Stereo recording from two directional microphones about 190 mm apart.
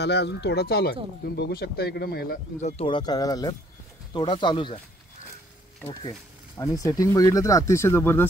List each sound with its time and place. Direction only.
0.0 s speech: 60° left (ahead or behind)
2.6 s speech: 25° left (ahead or behind)
6.6 s speech: 20° left (ahead or behind)